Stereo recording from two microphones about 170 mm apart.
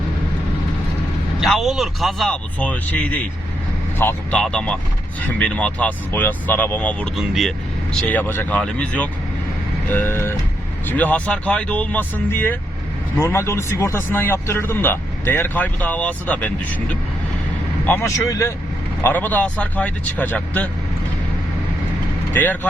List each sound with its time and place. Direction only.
1.4 s speech: centre (ahead or behind)
17.8 s speech: 15° left (ahead or behind)
22.3 s speech: 10° left (ahead or behind)